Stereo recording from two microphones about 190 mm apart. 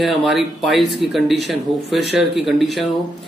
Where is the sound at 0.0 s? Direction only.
Centre (ahead or behind).